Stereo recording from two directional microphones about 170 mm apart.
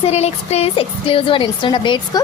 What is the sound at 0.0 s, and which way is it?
A woman's voice, 40° left (ahead or behind).